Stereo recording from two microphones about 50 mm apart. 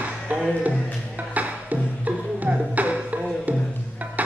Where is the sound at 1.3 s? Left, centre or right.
Right.